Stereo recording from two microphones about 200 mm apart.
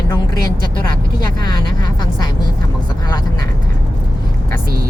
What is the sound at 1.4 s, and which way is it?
Vehicle, 20° left (ahead or behind).